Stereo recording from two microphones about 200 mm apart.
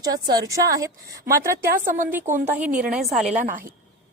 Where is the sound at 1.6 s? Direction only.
45° right (ahead or behind).